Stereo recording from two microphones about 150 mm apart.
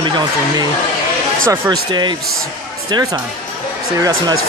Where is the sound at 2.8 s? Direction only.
30° right (ahead or behind).